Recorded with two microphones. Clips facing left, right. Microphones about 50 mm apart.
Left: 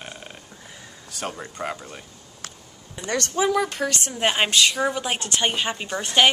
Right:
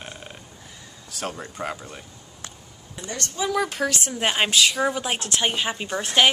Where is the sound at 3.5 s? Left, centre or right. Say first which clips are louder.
Even; centre.